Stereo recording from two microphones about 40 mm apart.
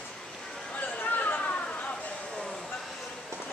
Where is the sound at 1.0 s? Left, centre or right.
Left.